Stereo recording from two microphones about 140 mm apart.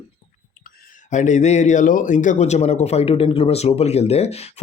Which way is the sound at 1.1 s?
60° left (ahead or behind).